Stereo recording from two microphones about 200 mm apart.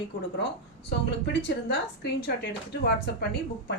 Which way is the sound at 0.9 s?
60° left (ahead or behind).